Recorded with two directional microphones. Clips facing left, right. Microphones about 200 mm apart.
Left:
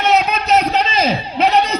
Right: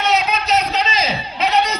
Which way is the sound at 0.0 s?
55° left (ahead or behind).